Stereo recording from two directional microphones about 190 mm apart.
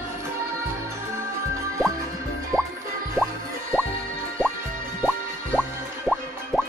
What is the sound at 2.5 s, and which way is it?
Music, 15° right (ahead or behind).